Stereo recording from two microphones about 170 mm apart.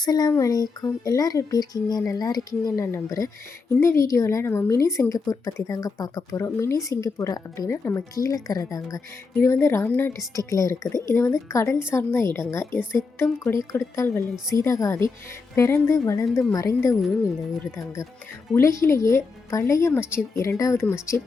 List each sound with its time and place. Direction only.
0.0 s a woman's voice: 25° left (ahead or behind)
18.5 s a woman's voice: 15° left (ahead or behind)